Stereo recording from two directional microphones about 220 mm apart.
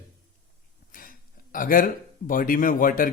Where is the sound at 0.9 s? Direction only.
40° left (ahead or behind).